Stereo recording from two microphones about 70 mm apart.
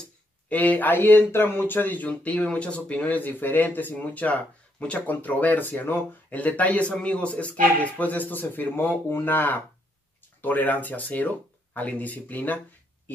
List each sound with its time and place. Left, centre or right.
0.5 s speech: left